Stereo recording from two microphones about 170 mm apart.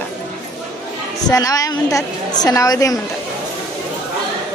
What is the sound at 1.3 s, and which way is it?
A woman's voice, 20° left (ahead or behind).